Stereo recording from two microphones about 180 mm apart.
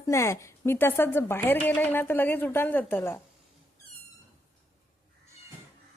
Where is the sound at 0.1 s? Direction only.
15° left (ahead or behind).